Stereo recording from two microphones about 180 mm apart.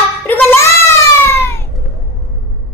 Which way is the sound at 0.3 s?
15° left (ahead or behind).